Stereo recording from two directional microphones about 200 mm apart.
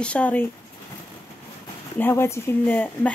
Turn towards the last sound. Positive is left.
turn(degrees=10)  # may be behind; listen again after turning